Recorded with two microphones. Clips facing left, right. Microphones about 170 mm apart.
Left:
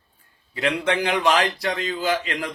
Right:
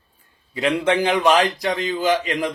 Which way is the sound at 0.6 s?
20° right (ahead or behind).